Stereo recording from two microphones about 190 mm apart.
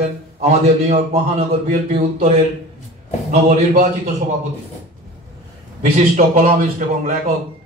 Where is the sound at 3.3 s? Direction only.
35° right (ahead or behind).